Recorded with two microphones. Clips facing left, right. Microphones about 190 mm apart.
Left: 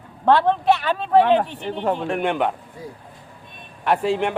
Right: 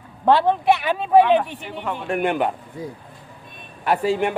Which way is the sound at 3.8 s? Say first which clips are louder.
Even; centre (ahead or behind).